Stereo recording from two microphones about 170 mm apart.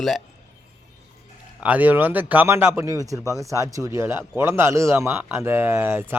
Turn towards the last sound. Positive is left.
turn(degrees=-15)  # may be behind; listen again after turning